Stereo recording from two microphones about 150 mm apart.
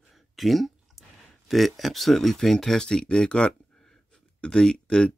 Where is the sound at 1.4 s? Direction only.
Centre (ahead or behind).